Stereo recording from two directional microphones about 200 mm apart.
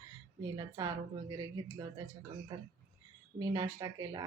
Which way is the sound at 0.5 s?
20° right (ahead or behind).